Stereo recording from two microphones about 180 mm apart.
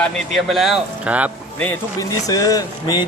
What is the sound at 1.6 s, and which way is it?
Speech, 15° left (ahead or behind).